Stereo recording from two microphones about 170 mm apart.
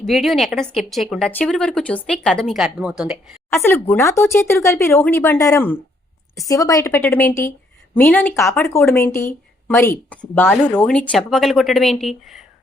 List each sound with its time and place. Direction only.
0.0 s speech: centre (ahead or behind)
3.5 s speech: 10° left (ahead or behind)